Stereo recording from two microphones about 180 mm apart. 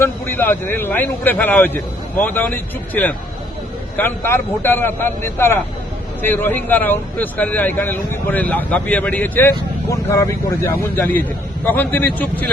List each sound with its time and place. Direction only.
0.0 s speech: 10° left (ahead or behind)